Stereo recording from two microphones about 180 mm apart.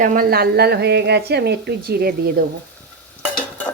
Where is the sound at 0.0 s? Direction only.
50° right (ahead or behind).